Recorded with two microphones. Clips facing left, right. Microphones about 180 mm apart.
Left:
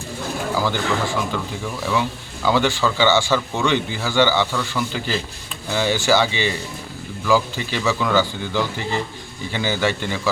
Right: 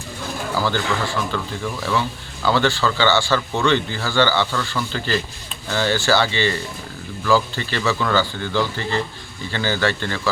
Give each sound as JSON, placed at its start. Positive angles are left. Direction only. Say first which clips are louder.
{"t": 0.5, "sound": "speech", "louder": "even", "side_deg": 15}